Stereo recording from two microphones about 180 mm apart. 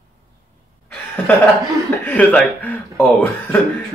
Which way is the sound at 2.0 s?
10° left (ahead or behind).